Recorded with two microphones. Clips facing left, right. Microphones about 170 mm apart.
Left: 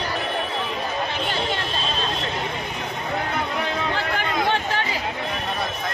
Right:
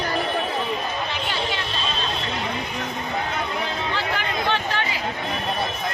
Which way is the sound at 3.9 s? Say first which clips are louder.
Left 2 dB; 50° left (ahead or behind).